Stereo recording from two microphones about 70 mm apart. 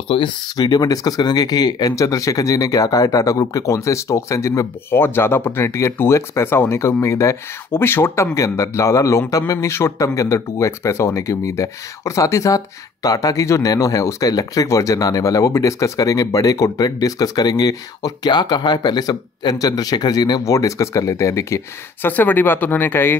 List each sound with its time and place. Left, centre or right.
0.6 s speech: left
4.9 s speech: left
8.4 s speech: left
17.0 s speech: left
20.5 s speech: left
22.0 s speech: left